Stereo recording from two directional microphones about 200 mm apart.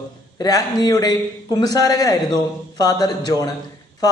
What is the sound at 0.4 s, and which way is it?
A man's voice, 20° left (ahead or behind).